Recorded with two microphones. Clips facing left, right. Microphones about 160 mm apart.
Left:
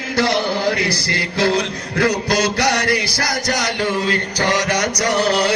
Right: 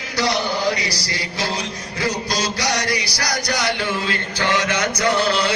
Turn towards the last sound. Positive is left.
turn(degrees=40)  # may be behind; listen again after turning